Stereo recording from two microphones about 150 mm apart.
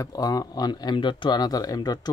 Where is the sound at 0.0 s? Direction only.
25° left (ahead or behind).